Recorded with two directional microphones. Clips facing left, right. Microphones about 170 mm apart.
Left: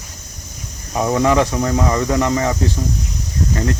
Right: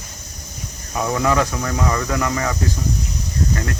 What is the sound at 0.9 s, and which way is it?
Speech, 25° left (ahead or behind).